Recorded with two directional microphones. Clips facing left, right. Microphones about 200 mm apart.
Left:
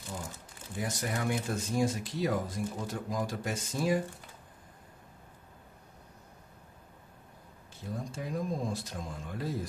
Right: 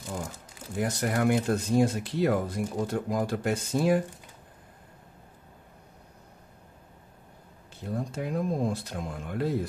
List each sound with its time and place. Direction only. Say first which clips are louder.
0.7 s speech: right 7 dB; 65° right (ahead or behind)
7.8 s speech: right 6 dB; 60° right (ahead or behind)